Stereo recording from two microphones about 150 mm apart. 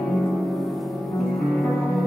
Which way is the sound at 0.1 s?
Centre (ahead or behind).